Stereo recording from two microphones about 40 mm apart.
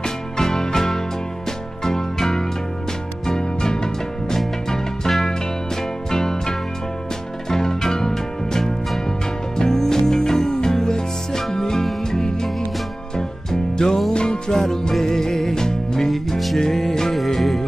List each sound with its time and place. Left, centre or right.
0.0 s music: centre
4.4 s music: centre
16.1 s music: centre